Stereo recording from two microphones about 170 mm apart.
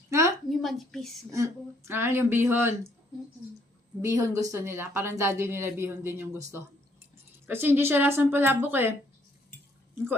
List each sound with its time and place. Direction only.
0.1 s a sound: 15° right (ahead or behind)
0.5 s a woman's voice: centre (ahead or behind)
1.3 s a woman's voice: 15° right (ahead or behind)
4.0 s a woman's voice: 20° right (ahead or behind)